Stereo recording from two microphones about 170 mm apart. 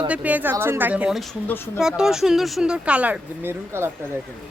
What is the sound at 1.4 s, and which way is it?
Speech, 10° left (ahead or behind).